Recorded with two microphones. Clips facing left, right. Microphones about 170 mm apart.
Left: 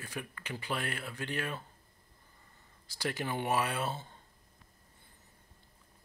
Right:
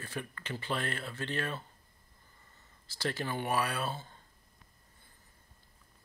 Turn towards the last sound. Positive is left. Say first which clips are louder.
# even
turn(degrees=20)  # may be behind; listen again after turning